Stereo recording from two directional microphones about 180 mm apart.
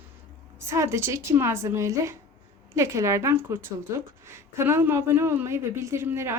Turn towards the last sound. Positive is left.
turn(degrees=-15)  # may be behind; listen again after turning